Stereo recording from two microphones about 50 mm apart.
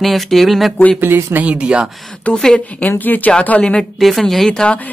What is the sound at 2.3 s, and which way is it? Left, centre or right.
Speech, centre.